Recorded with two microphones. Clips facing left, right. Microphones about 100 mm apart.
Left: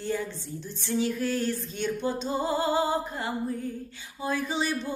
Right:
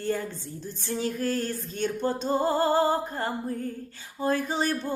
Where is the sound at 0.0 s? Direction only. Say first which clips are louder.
Right 1 dB; 50° right (ahead or behind).